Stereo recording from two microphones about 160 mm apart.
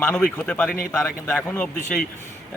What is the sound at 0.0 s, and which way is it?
Speech, 10° left (ahead or behind).